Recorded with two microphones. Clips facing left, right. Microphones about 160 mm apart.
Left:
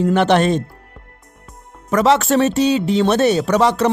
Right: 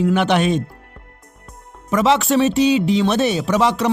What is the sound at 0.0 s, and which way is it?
Speech, 5° right (ahead or behind).